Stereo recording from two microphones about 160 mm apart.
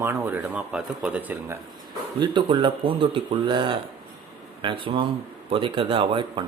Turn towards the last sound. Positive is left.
turn(degrees=-30)  # may be behind; listen again after turning